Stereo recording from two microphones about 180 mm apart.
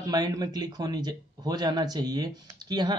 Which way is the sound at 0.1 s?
20° right (ahead or behind).